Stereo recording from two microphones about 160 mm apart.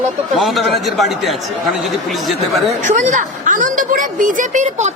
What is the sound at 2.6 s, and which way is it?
A woman's voice, 50° right (ahead or behind).